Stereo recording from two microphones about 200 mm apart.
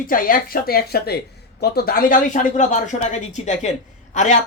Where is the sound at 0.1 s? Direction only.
45° left (ahead or behind).